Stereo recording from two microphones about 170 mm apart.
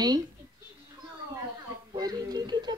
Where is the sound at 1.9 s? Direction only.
25° right (ahead or behind).